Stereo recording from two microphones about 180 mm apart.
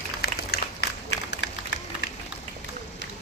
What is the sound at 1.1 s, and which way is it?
Run, 70° left (ahead or behind).